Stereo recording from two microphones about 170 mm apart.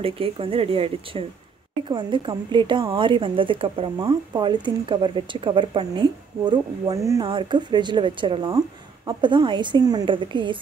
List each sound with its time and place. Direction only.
0.0 s a woman's voice: 35° right (ahead or behind)